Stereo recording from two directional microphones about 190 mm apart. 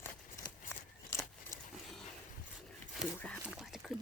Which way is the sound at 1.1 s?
15° left (ahead or behind).